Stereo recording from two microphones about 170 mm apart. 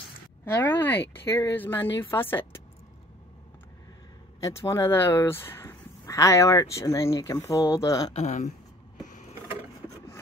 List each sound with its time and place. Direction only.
0.5 s speech: 10° left (ahead or behind)
4.4 s speech: 20° left (ahead or behind)
8.1 s speech: 40° left (ahead or behind)
9.0 s a sound: 50° left (ahead or behind)